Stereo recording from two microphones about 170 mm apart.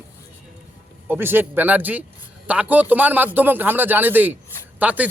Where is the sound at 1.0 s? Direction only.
10° right (ahead or behind).